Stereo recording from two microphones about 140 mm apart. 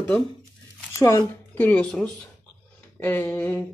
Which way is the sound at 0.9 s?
20° left (ahead or behind).